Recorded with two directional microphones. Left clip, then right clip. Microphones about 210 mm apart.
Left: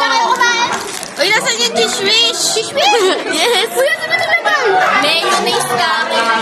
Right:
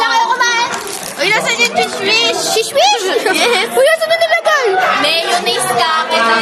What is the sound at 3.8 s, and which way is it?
Speech, 60° right (ahead or behind).